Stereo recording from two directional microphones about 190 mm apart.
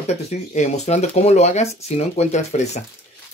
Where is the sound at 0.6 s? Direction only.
35° left (ahead or behind).